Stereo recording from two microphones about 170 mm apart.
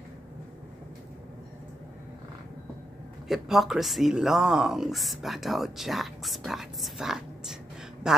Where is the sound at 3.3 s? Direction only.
Centre (ahead or behind).